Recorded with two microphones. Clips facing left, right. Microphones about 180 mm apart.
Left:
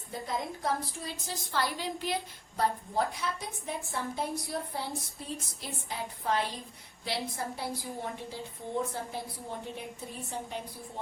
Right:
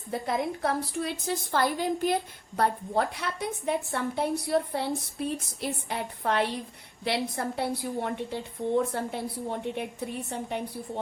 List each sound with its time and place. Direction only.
0.1 s a woman's voice: 65° right (ahead or behind)